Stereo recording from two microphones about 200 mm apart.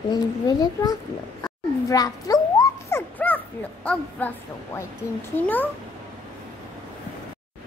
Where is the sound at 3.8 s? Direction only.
10° left (ahead or behind).